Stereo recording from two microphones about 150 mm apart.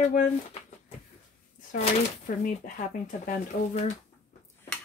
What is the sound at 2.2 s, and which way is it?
Speech, 60° left (ahead or behind).